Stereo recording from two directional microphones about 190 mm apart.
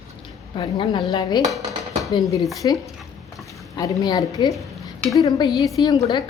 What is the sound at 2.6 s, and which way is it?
A woman's voice, 15° left (ahead or behind).